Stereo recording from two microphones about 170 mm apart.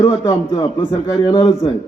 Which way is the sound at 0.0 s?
20° left (ahead or behind).